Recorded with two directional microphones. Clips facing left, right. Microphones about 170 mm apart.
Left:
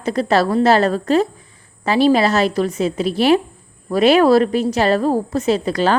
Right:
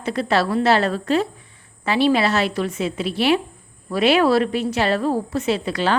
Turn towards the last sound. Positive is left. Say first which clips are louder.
# left 4 dB
turn(degrees=40)  # may be behind; listen again after turning